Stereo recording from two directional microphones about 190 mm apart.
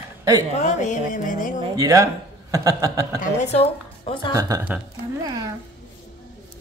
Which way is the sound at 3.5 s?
25° left (ahead or behind).